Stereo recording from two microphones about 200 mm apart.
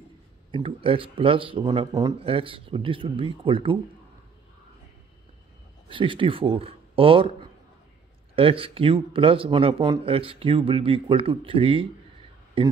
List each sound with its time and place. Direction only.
0.5 s speech: 25° right (ahead or behind)
5.9 s speech: 25° right (ahead or behind)
8.4 s speech: 25° right (ahead or behind)